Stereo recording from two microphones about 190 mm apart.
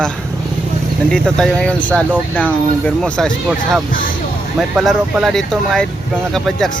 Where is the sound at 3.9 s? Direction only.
45° left (ahead or behind).